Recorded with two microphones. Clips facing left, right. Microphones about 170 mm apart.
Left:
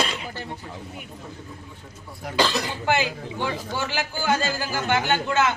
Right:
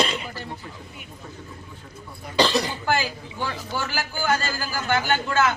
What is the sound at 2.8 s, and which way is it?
A man's voice, 20° left (ahead or behind).